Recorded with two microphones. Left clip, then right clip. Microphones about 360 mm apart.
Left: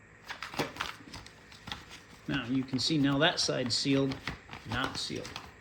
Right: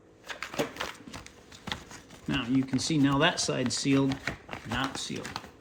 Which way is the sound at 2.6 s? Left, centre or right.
Centre.